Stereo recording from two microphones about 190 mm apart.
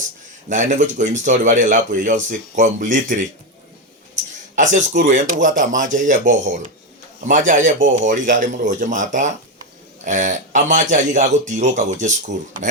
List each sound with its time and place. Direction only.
0.4 s a man's voice: 40° right (ahead or behind)
4.5 s a man's voice: 40° right (ahead or behind)